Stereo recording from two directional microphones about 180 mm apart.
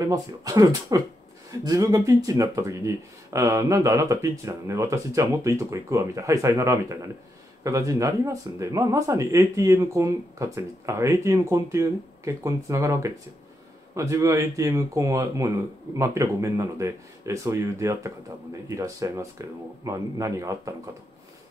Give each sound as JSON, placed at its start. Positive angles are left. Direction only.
{"t": 0.0, "sound": "speech", "side_deg": -20}